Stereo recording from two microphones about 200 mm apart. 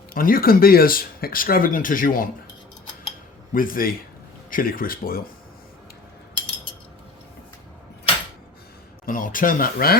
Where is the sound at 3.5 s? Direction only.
45° left (ahead or behind).